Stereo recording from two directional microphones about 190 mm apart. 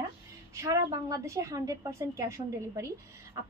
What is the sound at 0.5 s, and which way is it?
A woman's voice, 15° right (ahead or behind).